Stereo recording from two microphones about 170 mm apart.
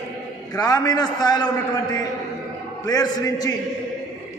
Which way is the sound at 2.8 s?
25° left (ahead or behind).